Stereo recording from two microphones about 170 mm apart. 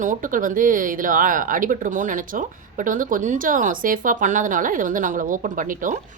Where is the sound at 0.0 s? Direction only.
50° right (ahead or behind).